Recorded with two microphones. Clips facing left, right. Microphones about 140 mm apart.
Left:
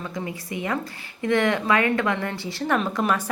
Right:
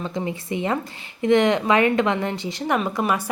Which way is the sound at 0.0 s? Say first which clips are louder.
Right 4 dB; 25° right (ahead or behind).